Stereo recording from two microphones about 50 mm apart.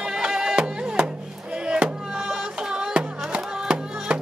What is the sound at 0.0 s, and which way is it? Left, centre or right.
Music, centre.